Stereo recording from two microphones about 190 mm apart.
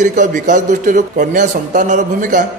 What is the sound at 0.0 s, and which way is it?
A man's voice, 40° right (ahead or behind).